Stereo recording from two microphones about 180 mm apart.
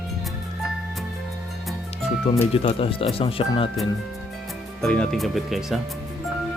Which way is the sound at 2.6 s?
30° left (ahead or behind).